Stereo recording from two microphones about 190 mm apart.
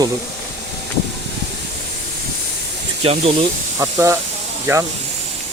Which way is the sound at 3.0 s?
30° right (ahead or behind).